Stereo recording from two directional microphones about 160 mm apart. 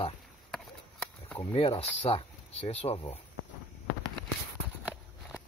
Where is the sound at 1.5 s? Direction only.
35° left (ahead or behind).